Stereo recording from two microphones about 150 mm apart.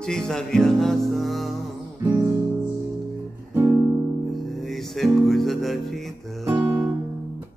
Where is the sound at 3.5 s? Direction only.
15° right (ahead or behind).